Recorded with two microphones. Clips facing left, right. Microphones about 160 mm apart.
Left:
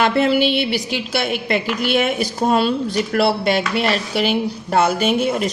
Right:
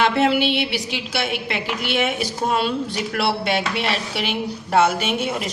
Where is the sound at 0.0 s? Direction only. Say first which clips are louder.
Left 2 dB; 40° left (ahead or behind).